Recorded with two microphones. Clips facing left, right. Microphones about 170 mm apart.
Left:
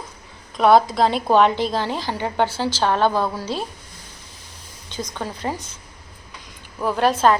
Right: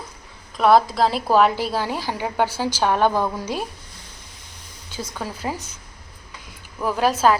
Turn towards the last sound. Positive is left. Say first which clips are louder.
# left 1 dB
turn(degrees=-5)  # may be behind; listen again after turning